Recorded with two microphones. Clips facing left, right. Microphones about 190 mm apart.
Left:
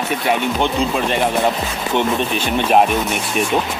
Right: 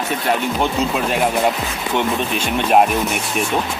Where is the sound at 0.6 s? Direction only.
5° right (ahead or behind).